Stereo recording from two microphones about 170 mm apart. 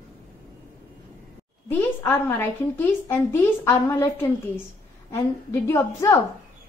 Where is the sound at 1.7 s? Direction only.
10° left (ahead or behind).